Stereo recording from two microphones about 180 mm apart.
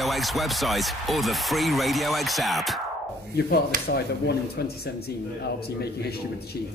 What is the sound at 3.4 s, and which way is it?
Speech, 60° left (ahead or behind).